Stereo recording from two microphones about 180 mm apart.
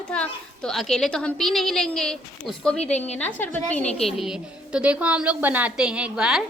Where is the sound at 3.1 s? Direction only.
10° left (ahead or behind).